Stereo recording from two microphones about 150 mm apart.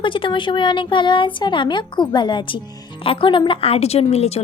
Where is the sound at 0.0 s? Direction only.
35° left (ahead or behind).